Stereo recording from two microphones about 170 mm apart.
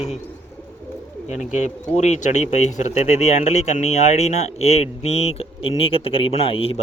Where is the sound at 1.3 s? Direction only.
45° left (ahead or behind).